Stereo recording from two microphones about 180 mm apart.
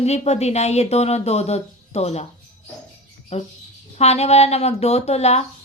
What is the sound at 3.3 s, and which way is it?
A woman's voice, 35° left (ahead or behind).